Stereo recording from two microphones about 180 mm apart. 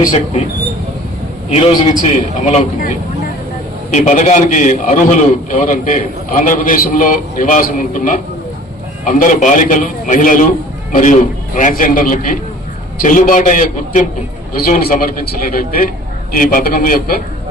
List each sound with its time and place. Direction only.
1.5 s a man's voice: 40° left (ahead or behind)
3.9 s a man's voice: 45° left (ahead or behind)